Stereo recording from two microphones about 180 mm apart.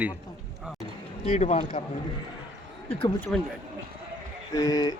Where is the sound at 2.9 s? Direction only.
30° left (ahead or behind).